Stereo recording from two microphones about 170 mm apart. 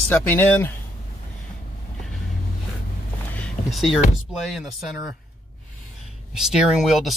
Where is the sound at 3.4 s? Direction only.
Centre (ahead or behind).